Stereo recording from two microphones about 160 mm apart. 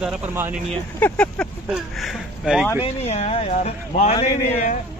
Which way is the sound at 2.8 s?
40° left (ahead or behind).